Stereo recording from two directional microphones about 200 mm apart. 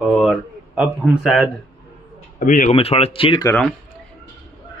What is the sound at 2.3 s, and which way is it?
Speech, 40° left (ahead or behind).